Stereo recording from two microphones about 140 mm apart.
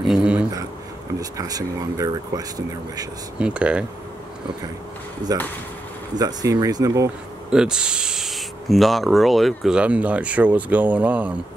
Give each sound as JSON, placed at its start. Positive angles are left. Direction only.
{"t": 0.0, "sound": "a sound", "side_deg": -5}
{"t": 1.4, "sound": "speech", "side_deg": -25}
{"t": 3.3, "sound": "speech", "side_deg": -10}
{"t": 5.3, "sound": "speech", "side_deg": -25}
{"t": 7.5, "sound": "speech", "side_deg": -5}